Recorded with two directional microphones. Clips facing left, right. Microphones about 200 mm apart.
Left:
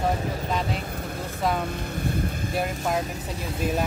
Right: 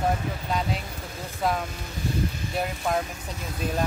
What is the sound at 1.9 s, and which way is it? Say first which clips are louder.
Speech: left 1 dB; 55° left (ahead or behind).